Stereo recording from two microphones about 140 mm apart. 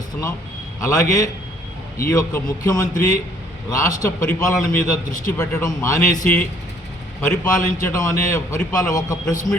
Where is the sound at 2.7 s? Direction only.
25° left (ahead or behind).